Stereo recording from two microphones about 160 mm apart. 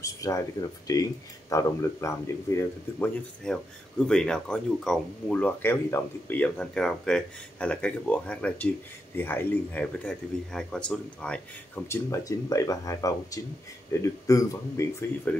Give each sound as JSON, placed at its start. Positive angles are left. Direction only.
{"t": 0.0, "sound": "speech", "side_deg": 20}
{"t": 3.4, "sound": "speech", "side_deg": 5}